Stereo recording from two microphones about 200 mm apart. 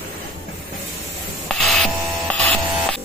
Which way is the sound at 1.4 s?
Centre (ahead or behind).